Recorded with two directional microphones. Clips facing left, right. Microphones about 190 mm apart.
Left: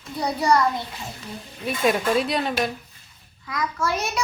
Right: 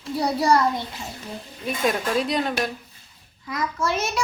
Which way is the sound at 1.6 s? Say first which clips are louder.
Left 2 dB; centre (ahead or behind).